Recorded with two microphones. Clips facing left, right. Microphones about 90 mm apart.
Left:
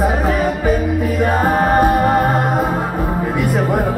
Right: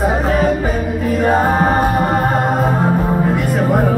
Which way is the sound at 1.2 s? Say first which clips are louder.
Right 2 dB; 25° right (ahead or behind).